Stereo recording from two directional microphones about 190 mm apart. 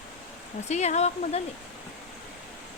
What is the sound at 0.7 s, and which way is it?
Speech, 35° left (ahead or behind).